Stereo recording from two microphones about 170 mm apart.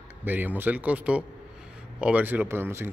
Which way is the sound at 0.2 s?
10° right (ahead or behind).